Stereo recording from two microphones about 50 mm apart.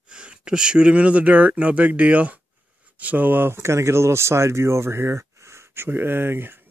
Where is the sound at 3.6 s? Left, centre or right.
Right.